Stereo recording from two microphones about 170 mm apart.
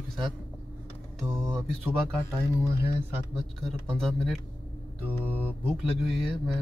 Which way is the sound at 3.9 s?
5° left (ahead or behind).